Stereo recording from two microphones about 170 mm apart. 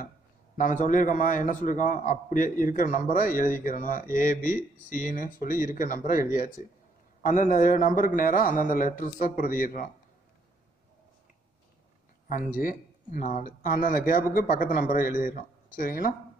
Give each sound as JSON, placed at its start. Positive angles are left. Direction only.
{"t": 0.6, "sound": "a man's voice", "side_deg": 50}
{"t": 7.2, "sound": "a man's voice", "side_deg": 50}
{"t": 12.5, "sound": "speech", "side_deg": 55}